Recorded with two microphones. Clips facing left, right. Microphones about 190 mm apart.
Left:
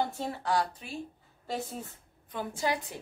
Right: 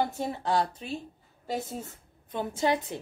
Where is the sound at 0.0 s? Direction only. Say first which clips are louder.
Right 3 dB; 15° right (ahead or behind).